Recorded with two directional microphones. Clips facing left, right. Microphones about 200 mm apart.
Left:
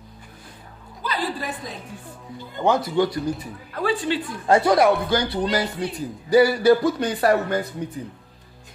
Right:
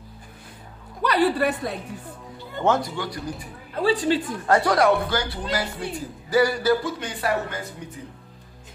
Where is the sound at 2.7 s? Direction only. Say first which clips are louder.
Left 1 dB; centre (ahead or behind).